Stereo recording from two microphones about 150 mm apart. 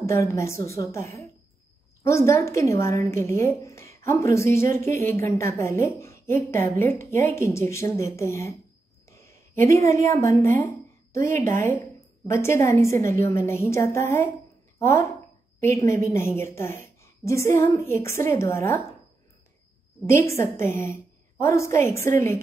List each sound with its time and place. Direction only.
0.0 s a woman's voice: 20° left (ahead or behind)
9.1 s a sound: 20° left (ahead or behind)
10.1 s a woman's voice: 15° left (ahead or behind)
20.1 s a woman's voice: 20° left (ahead or behind)